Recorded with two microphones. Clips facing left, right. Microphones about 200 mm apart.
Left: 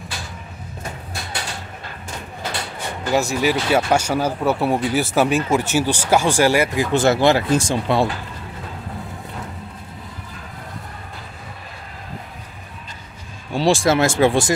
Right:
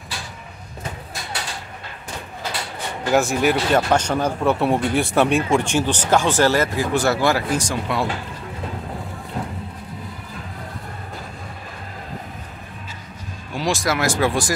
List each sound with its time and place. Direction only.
3.1 s speech: centre (ahead or behind)
6.9 s speech: 25° left (ahead or behind)
13.5 s speech: 30° left (ahead or behind)